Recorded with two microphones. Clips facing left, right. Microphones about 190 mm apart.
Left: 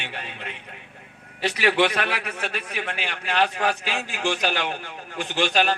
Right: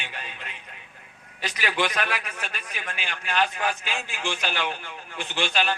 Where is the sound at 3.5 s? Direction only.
35° left (ahead or behind).